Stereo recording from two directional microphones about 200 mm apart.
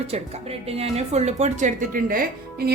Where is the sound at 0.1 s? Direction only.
30° right (ahead or behind).